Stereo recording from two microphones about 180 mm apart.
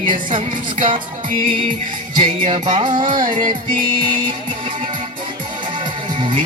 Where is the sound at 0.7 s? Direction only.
45° right (ahead or behind).